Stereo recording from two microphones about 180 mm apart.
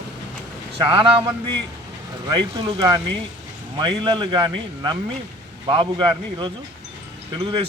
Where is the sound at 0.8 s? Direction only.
30° right (ahead or behind).